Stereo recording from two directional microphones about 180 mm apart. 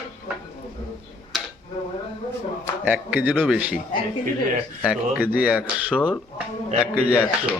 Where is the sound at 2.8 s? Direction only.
10° right (ahead or behind).